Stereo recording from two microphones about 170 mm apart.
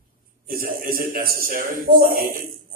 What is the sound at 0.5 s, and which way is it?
A man's voice, 60° right (ahead or behind).